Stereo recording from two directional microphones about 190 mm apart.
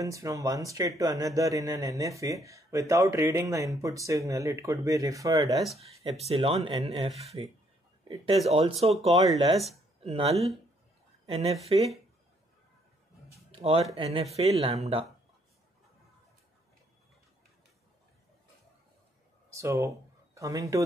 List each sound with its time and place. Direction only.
0.0 s speech: 15° right (ahead or behind)
6.0 s speech: 30° right (ahead or behind)
8.5 s speech: 30° right (ahead or behind)
9.9 s a sound: 30° right (ahead or behind)
10.3 s speech: centre (ahead or behind)
11.2 s a woman's voice: 35° right (ahead or behind)
13.5 s speech: 30° right (ahead or behind)
19.5 s speech: 15° right (ahead or behind)